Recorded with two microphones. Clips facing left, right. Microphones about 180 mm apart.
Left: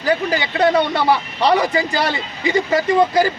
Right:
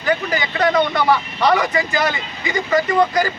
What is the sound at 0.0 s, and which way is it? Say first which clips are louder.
Speech: left 2 dB; 30° left (ahead or behind).